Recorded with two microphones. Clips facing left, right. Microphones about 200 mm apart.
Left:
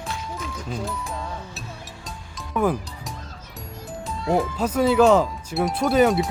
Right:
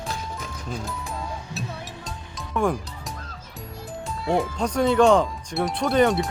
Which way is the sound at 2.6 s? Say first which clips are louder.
Left 1 dB; 5° left (ahead or behind).